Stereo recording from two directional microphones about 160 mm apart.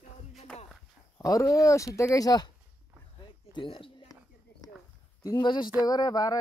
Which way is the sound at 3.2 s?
30° left (ahead or behind).